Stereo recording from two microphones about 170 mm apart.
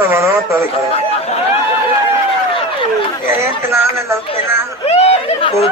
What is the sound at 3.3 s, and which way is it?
Speech, 15° right (ahead or behind).